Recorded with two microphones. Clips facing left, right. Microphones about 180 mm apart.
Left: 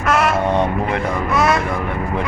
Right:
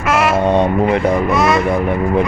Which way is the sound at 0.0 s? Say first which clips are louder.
Right 2 dB; 5° right (ahead or behind).